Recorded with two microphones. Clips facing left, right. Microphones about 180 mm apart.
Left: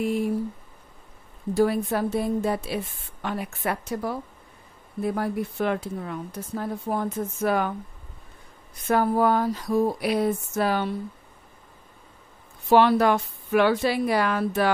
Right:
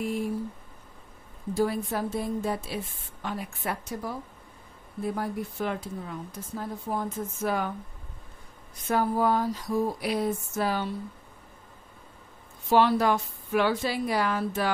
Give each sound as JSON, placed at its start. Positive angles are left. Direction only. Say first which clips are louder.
{"t": 1.5, "sound": "a woman's voice", "louder": "left 5 dB", "side_deg": 65}
{"t": 8.8, "sound": "a sound", "louder": "left 4 dB", "side_deg": 65}
{"t": 12.6, "sound": "a woman's voice", "louder": "left 4 dB", "side_deg": 65}